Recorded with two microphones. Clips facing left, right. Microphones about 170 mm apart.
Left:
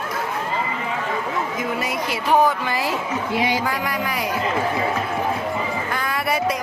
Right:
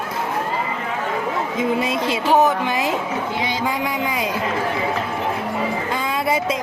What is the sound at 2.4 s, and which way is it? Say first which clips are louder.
Speech: right 2 dB; 20° right (ahead or behind).